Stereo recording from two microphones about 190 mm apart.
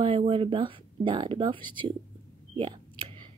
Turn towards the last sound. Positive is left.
turn(degrees=-25)  # may be behind; listen again after turning